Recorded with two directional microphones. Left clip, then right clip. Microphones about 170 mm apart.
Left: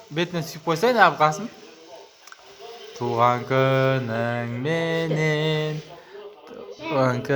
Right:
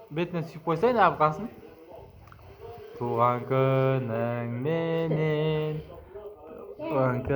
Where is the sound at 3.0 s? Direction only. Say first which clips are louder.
Left 5 dB; 30° left (ahead or behind).